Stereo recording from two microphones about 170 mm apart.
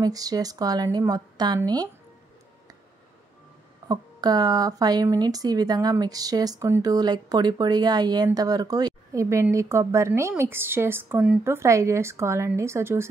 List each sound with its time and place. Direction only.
0.0 s a woman's voice: 20° right (ahead or behind)
3.9 s a woman's voice: 25° right (ahead or behind)